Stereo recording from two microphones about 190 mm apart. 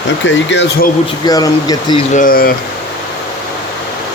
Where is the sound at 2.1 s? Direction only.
50° left (ahead or behind).